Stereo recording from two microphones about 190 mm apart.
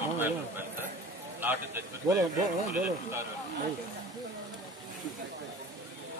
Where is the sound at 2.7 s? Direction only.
10° right (ahead or behind).